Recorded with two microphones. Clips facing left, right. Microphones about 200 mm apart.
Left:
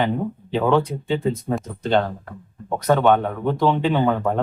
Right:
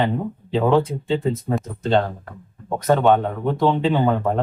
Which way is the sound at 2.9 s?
5° right (ahead or behind).